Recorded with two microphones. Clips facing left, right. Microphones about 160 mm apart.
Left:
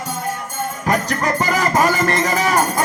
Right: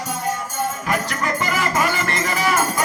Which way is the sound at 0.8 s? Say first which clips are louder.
Left 4 dB; 40° left (ahead or behind).